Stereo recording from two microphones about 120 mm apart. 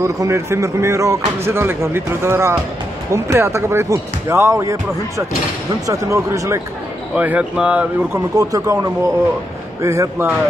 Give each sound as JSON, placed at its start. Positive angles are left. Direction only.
{"t": 0.0, "sound": "speech", "side_deg": -25}
{"t": 7.2, "sound": "speech", "side_deg": -10}
{"t": 8.4, "sound": "speech", "side_deg": -30}